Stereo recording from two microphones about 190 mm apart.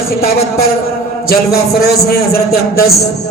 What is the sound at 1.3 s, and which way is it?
A man's voice, 55° left (ahead or behind).